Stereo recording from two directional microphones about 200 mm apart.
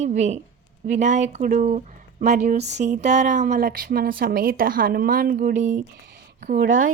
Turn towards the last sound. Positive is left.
turn(degrees=-40)  # may be behind; listen again after turning